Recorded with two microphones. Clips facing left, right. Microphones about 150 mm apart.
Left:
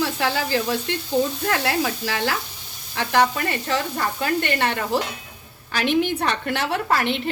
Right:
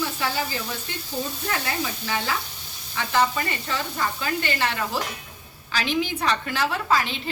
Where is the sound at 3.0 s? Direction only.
60° left (ahead or behind).